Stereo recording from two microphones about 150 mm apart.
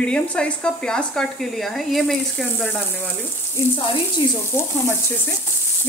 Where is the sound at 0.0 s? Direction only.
5° left (ahead or behind).